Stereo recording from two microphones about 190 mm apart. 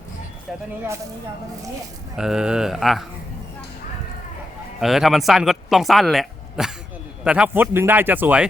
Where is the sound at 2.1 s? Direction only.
5° right (ahead or behind).